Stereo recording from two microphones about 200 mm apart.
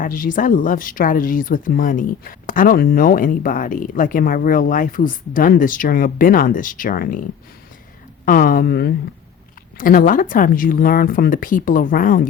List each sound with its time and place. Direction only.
0.0 s speech: 45° left (ahead or behind)
8.2 s speech: 45° left (ahead or behind)